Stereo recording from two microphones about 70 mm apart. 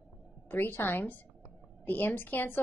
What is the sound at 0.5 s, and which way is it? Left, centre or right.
A woman's voice, left.